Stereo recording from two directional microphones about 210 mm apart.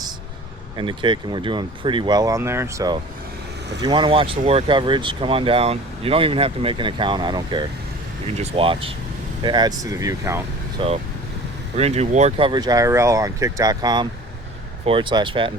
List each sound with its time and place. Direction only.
0.8 s speech: 25° right (ahead or behind)
10.8 s speech: 25° right (ahead or behind)